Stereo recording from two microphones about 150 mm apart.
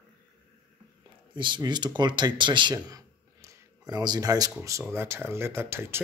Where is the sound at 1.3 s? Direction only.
30° right (ahead or behind).